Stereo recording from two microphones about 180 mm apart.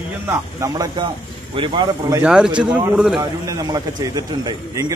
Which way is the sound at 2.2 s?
5° right (ahead or behind).